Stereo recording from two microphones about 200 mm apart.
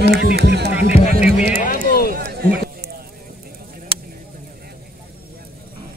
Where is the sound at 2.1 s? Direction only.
50° right (ahead or behind).